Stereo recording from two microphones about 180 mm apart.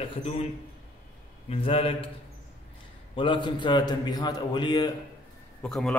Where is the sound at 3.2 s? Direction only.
25° left (ahead or behind).